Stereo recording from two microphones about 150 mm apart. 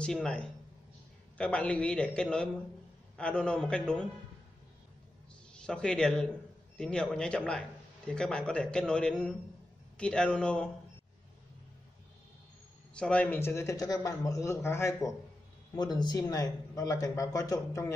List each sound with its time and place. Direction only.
0.0 s a man's voice: 5° left (ahead or behind)
5.5 s a man's voice: 5° left (ahead or behind)
12.9 s speech: 5° left (ahead or behind)